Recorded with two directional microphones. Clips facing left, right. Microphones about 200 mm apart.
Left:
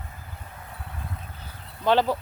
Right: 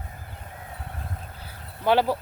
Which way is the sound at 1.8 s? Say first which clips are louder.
Even; 10° right (ahead or behind).